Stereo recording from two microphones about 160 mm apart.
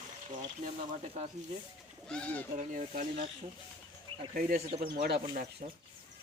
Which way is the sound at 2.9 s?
45° right (ahead or behind).